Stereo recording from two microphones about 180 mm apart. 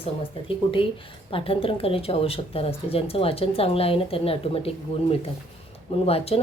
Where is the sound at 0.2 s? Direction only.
30° left (ahead or behind).